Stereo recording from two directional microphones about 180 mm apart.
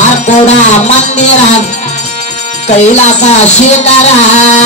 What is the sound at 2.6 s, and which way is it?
Speech, 40° left (ahead or behind).